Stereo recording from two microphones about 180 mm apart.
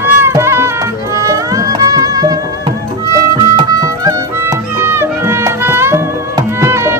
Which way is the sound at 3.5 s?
20° right (ahead or behind).